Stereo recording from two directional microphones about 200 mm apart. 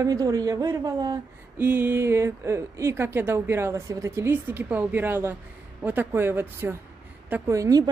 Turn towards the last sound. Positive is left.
turn(degrees=-15)  # may be behind; listen again after turning